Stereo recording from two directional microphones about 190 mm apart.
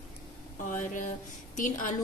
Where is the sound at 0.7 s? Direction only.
45° left (ahead or behind).